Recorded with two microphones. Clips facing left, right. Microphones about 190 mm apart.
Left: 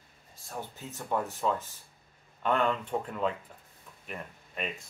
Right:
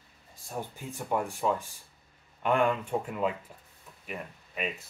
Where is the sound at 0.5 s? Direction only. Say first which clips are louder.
Right 3 dB; 15° right (ahead or behind).